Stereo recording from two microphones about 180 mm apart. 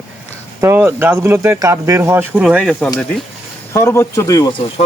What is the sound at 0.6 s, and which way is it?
Speech, 15° right (ahead or behind).